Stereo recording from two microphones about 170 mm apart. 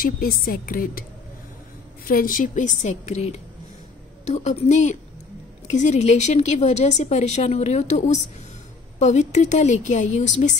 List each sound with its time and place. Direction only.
0.0 s a woman's voice: 55° left (ahead or behind)
2.0 s a woman's voice: 55° left (ahead or behind)